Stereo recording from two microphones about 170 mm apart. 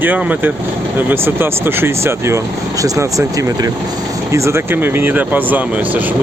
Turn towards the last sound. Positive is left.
turn(degrees=-10)  # may be behind; listen again after turning